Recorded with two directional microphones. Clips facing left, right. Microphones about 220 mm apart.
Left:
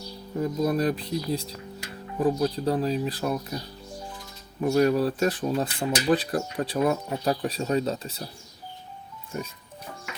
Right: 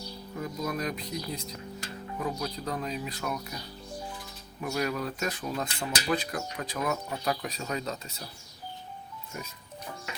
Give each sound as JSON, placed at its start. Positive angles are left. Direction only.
{"t": 0.3, "sound": "speech", "side_deg": 35}
{"t": 4.6, "sound": "speech", "side_deg": 35}